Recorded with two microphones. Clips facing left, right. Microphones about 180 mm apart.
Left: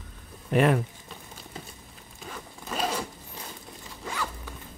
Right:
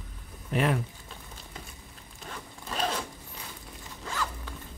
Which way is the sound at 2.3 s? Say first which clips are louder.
Left 2 dB; 5° left (ahead or behind).